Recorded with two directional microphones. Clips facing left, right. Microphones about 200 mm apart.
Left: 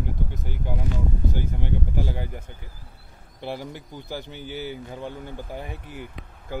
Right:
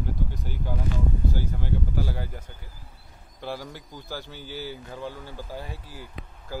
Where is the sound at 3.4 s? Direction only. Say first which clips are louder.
Left 2 dB; 15° left (ahead or behind).